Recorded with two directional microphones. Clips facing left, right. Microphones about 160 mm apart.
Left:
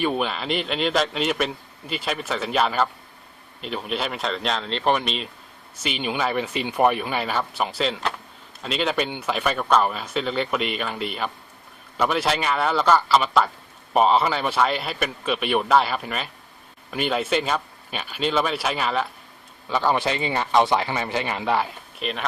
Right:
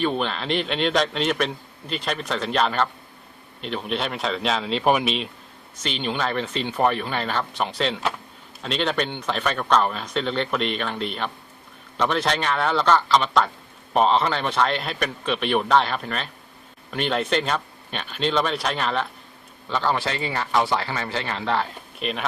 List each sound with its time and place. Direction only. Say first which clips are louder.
0.0 s speech: even; 5° left (ahead or behind)
21.9 s speech: right 1 dB; centre (ahead or behind)